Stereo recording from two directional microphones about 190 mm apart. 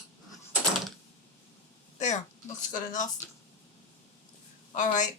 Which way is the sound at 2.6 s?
45° left (ahead or behind).